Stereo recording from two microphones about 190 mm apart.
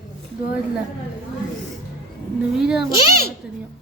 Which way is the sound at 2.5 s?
5° right (ahead or behind).